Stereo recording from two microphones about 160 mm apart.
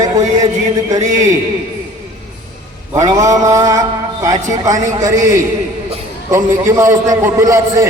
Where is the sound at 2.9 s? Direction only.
20° right (ahead or behind).